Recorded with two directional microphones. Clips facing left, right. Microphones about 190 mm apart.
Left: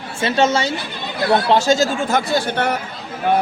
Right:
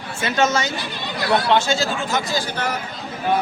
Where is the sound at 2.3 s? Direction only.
60° left (ahead or behind).